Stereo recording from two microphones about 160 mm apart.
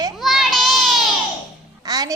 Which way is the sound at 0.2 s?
Centre (ahead or behind).